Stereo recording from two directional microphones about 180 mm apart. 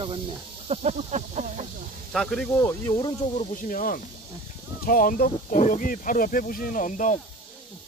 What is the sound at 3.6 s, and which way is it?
Speech, 50° left (ahead or behind).